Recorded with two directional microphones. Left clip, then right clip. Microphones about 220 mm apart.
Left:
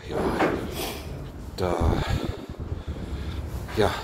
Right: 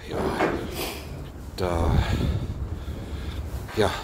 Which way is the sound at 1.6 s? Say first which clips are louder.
Even; 15° right (ahead or behind).